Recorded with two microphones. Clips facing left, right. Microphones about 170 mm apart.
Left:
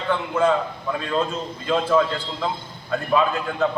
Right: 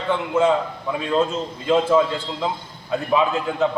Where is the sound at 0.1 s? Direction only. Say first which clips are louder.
Right 2 dB; 20° right (ahead or behind).